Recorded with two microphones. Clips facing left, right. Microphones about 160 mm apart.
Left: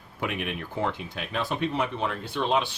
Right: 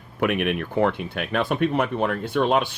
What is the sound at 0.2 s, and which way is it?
Speech, 65° right (ahead or behind).